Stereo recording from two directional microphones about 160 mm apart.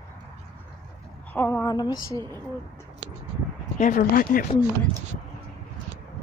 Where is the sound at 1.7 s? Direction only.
25° left (ahead or behind).